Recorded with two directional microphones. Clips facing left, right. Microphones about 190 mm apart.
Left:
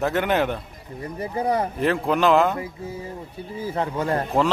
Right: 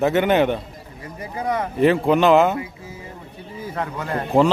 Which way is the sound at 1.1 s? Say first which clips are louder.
Left 1 dB; 30° left (ahead or behind).